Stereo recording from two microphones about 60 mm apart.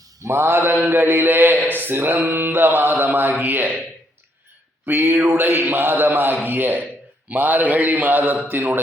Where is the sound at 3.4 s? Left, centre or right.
Right.